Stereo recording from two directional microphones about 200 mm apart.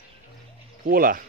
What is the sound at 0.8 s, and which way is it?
Speech, 45° right (ahead or behind).